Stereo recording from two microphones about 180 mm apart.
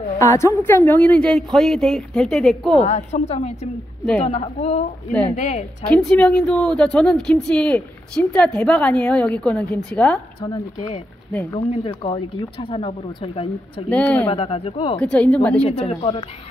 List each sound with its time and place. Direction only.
0.2 s speech: 15° left (ahead or behind)
2.8 s speech: 40° left (ahead or behind)
5.9 s speech: 5° left (ahead or behind)
11.5 s speech: 30° left (ahead or behind)
13.8 s a woman's voice: 5° left (ahead or behind)
14.3 s speech: 30° left (ahead or behind)
15.0 s speech: 5° left (ahead or behind)
15.9 s speech: 35° left (ahead or behind)